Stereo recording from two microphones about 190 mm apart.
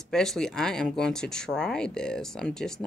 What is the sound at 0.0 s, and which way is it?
Speech, centre (ahead or behind).